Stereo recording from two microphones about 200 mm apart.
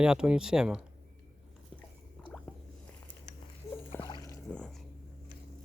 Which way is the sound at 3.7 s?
15° left (ahead or behind).